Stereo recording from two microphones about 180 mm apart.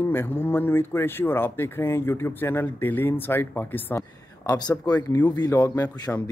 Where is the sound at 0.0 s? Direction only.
10° left (ahead or behind).